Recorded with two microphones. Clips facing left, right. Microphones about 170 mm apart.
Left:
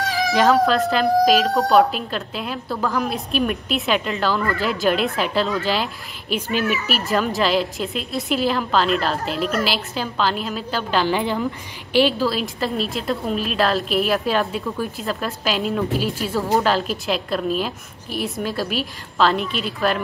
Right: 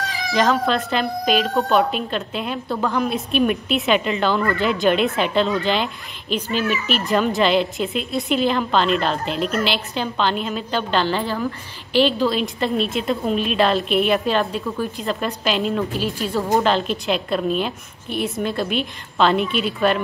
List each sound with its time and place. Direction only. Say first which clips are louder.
0.3 s a woman's voice: left 2 dB; 5° left (ahead or behind)